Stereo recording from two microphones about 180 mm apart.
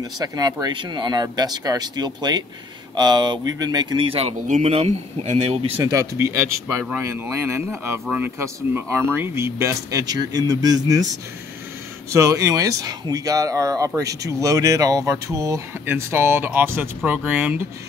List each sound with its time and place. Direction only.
0.0 s speech: 20° right (ahead or behind)
5.9 s speech: 15° right (ahead or behind)